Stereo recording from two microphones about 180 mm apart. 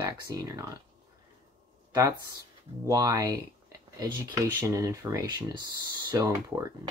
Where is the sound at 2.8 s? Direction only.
20° right (ahead or behind).